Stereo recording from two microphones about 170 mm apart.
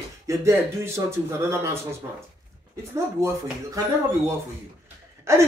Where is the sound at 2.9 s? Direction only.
15° right (ahead or behind).